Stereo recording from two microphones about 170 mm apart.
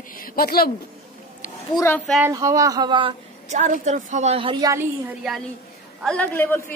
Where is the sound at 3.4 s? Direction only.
45° right (ahead or behind); by 5.1 s 15° right (ahead or behind).